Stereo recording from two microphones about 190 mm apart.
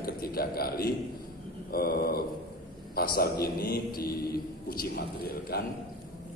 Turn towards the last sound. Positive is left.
turn(degrees=50)  # may be behind; listen again after turning